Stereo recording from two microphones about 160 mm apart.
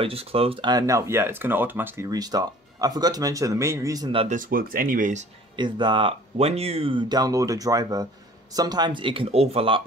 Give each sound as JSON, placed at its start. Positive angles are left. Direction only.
{"t": 0.0, "sound": "speech", "side_deg": -35}
{"t": 4.3, "sound": "speech", "side_deg": -60}
{"t": 5.6, "sound": "speech", "side_deg": -30}